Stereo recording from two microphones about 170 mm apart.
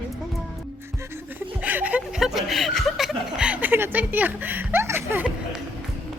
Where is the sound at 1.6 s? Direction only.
10° right (ahead or behind).